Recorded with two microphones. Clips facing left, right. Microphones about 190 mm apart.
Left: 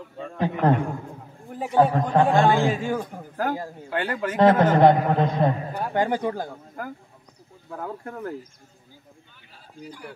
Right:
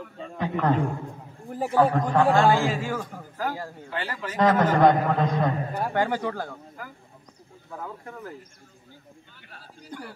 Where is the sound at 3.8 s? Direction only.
55° left (ahead or behind).